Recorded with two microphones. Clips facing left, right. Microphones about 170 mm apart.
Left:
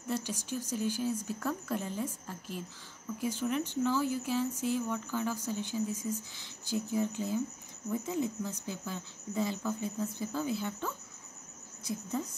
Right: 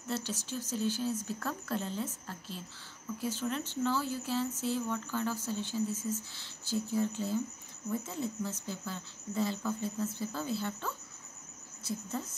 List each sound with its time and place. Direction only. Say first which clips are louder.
0.1 s speech: left 2 dB; 15° left (ahead or behind)